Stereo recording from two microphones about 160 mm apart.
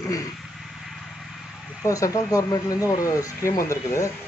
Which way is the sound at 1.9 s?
20° left (ahead or behind).